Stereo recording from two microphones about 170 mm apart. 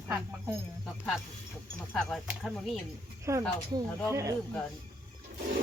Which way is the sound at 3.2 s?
15° right (ahead or behind).